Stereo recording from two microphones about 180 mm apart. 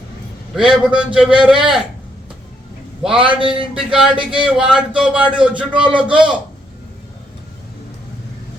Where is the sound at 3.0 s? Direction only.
5° right (ahead or behind).